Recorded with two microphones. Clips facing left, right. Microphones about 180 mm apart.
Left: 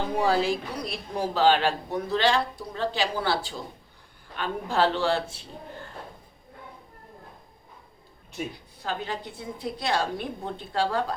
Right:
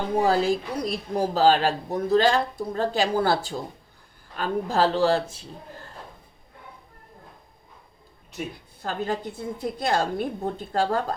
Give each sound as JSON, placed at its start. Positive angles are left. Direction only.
{"t": 0.2, "sound": "a man's voice", "side_deg": -40}
{"t": 8.8, "sound": "speech", "side_deg": -45}